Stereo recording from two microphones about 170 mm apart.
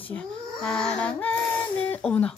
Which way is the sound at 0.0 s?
5° left (ahead or behind).